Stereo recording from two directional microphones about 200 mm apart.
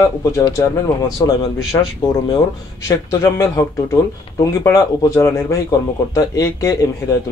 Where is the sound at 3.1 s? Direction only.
15° left (ahead or behind).